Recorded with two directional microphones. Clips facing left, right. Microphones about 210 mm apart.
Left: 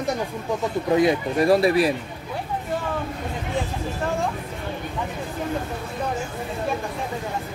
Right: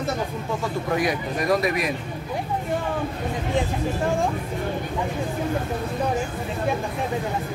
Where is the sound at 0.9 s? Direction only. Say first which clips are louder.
Left 7 dB; 30° left (ahead or behind).